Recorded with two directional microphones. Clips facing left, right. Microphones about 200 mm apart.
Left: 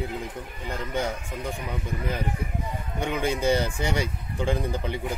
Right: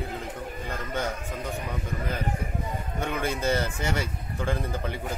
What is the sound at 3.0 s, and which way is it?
Speech, 15° left (ahead or behind).